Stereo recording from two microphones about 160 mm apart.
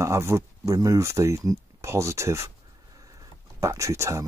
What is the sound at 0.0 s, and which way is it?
Speech, 20° right (ahead or behind).